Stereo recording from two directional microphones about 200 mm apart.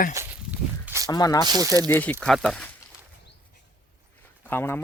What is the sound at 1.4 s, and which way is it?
Speech, 20° right (ahead or behind).